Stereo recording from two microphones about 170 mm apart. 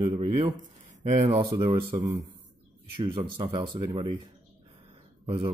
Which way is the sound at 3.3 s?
30° right (ahead or behind).